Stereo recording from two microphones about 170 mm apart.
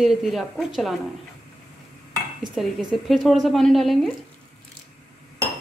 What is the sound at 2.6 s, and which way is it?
A woman's voice, centre (ahead or behind).